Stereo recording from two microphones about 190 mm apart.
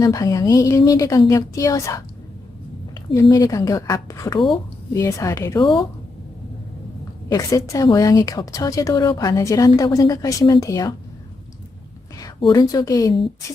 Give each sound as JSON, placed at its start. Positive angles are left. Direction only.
{"t": 0.0, "sound": "a woman's voice", "side_deg": 20}
{"t": 7.3, "sound": "a woman's voice", "side_deg": 20}
{"t": 12.2, "sound": "a woman's voice", "side_deg": 20}